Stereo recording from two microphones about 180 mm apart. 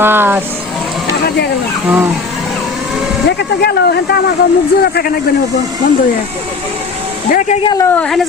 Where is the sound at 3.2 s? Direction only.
65° left (ahead or behind).